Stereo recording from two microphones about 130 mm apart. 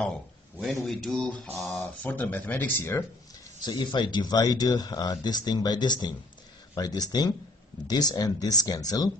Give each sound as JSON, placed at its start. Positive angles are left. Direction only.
{"t": 0.6, "sound": "speech", "side_deg": 5}
{"t": 3.6, "sound": "speech", "side_deg": 35}